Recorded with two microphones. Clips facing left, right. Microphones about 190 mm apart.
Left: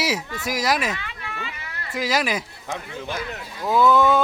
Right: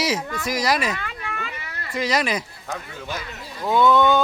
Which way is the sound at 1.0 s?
50° right (ahead or behind).